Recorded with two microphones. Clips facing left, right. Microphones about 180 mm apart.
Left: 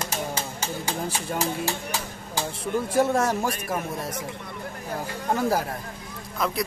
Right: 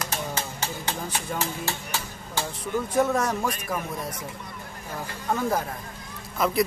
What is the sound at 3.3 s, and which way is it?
Speech, 5° left (ahead or behind).